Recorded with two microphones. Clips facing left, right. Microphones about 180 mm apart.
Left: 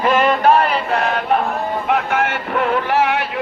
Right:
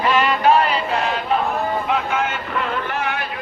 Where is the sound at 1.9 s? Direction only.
70° left (ahead or behind).